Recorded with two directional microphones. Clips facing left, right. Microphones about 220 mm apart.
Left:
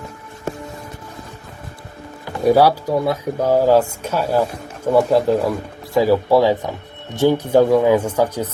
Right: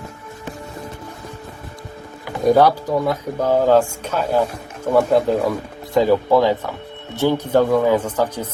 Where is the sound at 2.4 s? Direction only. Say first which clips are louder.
Even; 10° left (ahead or behind).